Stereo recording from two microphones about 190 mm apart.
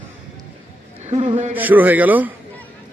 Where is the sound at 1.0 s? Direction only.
35° right (ahead or behind).